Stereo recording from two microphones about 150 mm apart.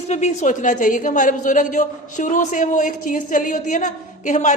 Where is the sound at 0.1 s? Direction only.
50° left (ahead or behind).